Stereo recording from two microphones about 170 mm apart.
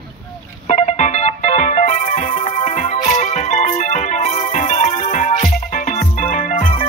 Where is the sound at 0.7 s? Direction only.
45° left (ahead or behind).